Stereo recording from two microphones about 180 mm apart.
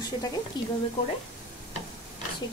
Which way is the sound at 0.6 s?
25° left (ahead or behind).